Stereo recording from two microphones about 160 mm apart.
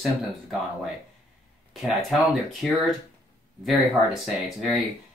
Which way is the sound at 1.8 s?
Centre (ahead or behind).